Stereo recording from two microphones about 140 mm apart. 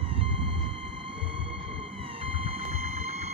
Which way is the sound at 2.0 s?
40° right (ahead or behind).